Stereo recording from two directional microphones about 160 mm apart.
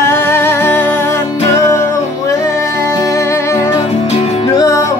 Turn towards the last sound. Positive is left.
turn(degrees=20)  # may be behind; listen again after turning